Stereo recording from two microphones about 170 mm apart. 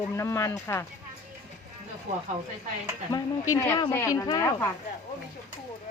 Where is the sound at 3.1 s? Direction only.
20° left (ahead or behind).